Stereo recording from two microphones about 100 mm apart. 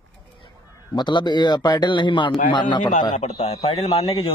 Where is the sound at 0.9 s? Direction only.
50° left (ahead or behind).